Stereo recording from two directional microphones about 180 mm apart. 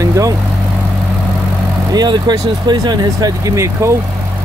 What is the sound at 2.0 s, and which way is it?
Speech, 25° right (ahead or behind).